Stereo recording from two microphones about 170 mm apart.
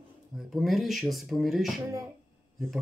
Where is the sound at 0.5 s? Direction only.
Centre (ahead or behind).